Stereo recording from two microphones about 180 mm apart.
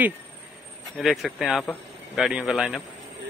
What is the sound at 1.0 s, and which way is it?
Speech, centre (ahead or behind).